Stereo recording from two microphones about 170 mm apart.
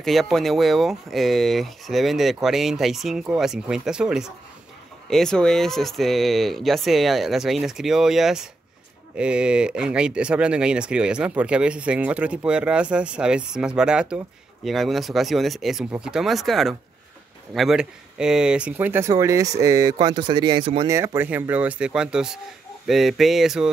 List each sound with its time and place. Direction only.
0.0 s speech: centre (ahead or behind); by 20.9 s 30° right (ahead or behind)
20.9 s speech: 15° right (ahead or behind)